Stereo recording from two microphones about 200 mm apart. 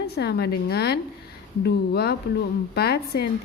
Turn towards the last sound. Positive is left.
turn(degrees=50)  # may be behind; listen again after turning